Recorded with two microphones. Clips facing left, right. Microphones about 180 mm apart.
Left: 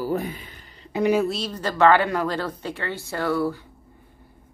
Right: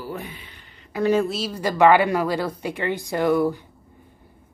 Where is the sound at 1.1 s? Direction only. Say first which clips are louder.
Right 1 dB; centre (ahead or behind); by 3.6 s 15° right (ahead or behind).